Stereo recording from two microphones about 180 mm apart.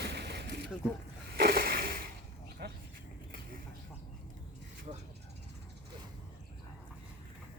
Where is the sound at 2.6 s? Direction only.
65° right (ahead or behind).